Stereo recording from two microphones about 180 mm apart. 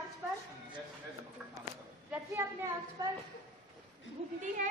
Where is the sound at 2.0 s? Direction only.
15° right (ahead or behind).